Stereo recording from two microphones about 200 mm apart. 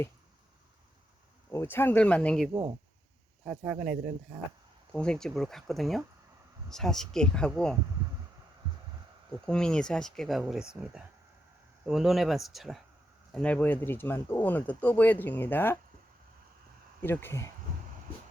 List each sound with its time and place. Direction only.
1.5 s speech: 10° left (ahead or behind)
2.5 s speech: 20° right (ahead or behind)
3.4 s speech: 5° right (ahead or behind)
9.5 s speech: 5° left (ahead or behind)
17.0 s speech: 10° left (ahead or behind)